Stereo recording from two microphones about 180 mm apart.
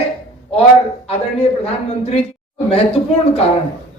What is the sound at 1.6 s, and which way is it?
Speech, 35° left (ahead or behind).